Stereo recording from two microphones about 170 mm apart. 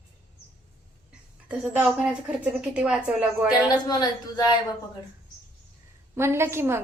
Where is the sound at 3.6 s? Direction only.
25° left (ahead or behind).